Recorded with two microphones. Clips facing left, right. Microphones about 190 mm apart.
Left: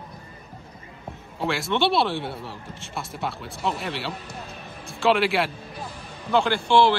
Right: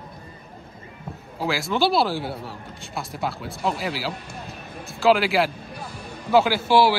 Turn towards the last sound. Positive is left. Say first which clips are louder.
# right 1 dB
turn(degrees=-5)  # may be behind; listen again after turning